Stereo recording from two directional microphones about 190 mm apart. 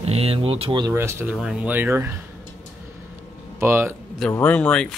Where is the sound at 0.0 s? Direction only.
30° right (ahead or behind); by 2.1 s 10° right (ahead or behind).